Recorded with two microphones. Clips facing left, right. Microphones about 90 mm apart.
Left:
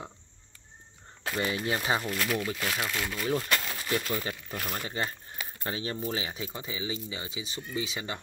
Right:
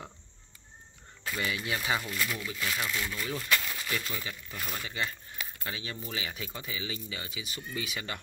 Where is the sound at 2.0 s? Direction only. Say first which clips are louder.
Left 4 dB; 55° left (ahead or behind).